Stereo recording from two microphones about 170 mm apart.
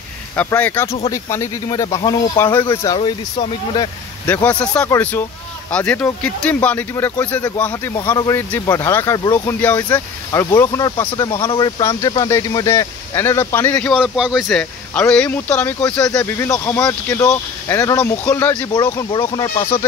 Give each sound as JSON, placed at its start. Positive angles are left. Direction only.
{"t": 0.4, "sound": "speech", "side_deg": 10}
{"t": 4.3, "sound": "speech", "side_deg": 10}
{"t": 12.0, "sound": "speech", "side_deg": 20}
{"t": 13.9, "sound": "speech", "side_deg": -5}
{"t": 18.7, "sound": "speech", "side_deg": 25}